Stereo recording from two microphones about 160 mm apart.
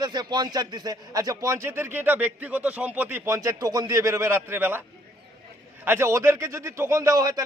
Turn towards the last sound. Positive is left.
turn(degrees=-25)  # may be behind; listen again after turning